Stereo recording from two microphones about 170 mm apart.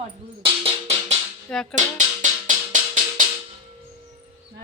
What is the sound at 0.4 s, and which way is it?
Music, 35° right (ahead or behind).